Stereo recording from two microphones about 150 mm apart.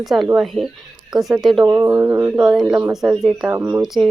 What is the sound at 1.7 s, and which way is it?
Speech, 20° right (ahead or behind).